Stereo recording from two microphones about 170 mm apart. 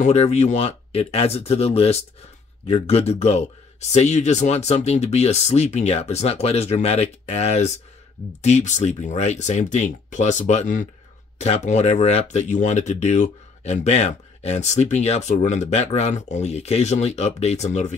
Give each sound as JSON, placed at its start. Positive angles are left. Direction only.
{"t": 0.0, "sound": "speech", "side_deg": 40}